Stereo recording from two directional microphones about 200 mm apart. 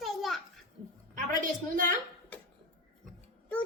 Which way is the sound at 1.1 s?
40° right (ahead or behind).